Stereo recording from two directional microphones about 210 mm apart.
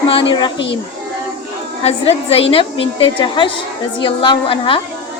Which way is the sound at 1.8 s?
30° left (ahead or behind).